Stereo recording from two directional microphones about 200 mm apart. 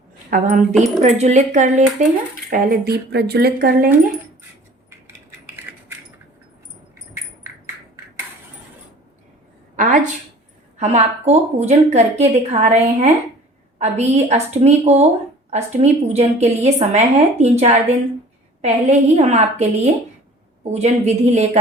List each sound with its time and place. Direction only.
0.3 s a woman's voice: 45° right (ahead or behind)
9.7 s a woman's voice: 40° right (ahead or behind)
20.7 s a woman's voice: 35° right (ahead or behind)